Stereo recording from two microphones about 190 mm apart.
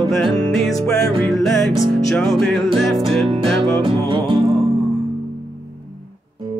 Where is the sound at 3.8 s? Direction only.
25° right (ahead or behind).